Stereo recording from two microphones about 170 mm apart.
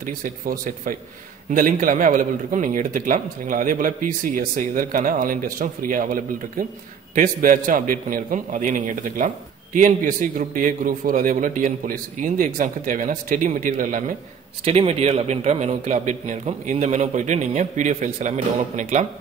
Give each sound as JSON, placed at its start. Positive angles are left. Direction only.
{"t": 0.0, "sound": "a man's voice", "side_deg": -55}
{"t": 14.6, "sound": "a man's voice", "side_deg": -35}